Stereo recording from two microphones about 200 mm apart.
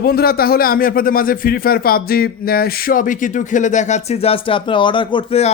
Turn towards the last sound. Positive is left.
turn(degrees=30)  # may be behind; listen again after turning